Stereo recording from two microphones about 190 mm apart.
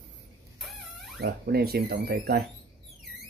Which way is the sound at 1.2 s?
55° right (ahead or behind).